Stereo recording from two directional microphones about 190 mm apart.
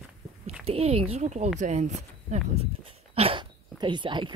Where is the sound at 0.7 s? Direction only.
30° right (ahead or behind).